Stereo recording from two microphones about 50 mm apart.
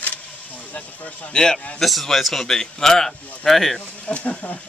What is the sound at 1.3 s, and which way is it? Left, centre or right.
A man's voice, centre.